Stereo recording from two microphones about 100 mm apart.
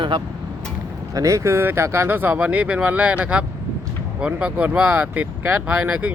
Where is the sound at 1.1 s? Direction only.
35° right (ahead or behind).